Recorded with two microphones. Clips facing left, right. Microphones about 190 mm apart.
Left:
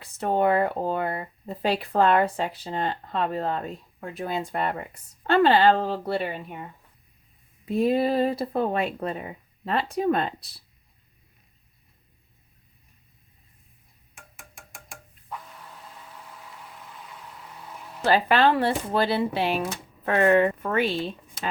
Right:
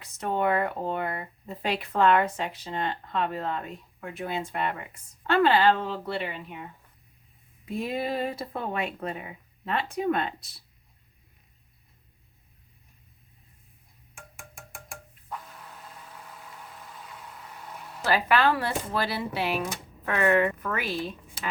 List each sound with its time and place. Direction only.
0.0 s speech: 30° left (ahead or behind)
7.6 s speech: 35° left (ahead or behind)
18.0 s speech: 30° left (ahead or behind)